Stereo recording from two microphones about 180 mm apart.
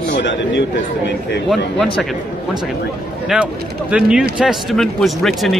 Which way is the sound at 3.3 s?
5° right (ahead or behind).